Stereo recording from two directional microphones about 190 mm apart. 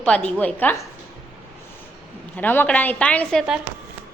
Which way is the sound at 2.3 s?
10° left (ahead or behind).